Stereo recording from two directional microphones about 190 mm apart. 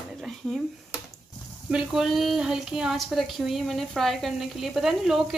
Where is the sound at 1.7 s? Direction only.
5° right (ahead or behind).